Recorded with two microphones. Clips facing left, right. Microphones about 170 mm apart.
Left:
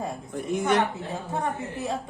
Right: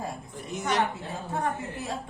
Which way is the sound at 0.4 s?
55° left (ahead or behind).